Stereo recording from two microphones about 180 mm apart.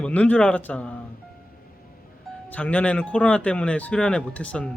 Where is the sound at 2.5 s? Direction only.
5° left (ahead or behind).